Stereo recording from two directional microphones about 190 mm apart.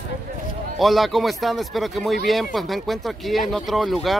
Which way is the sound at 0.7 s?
Centre (ahead or behind).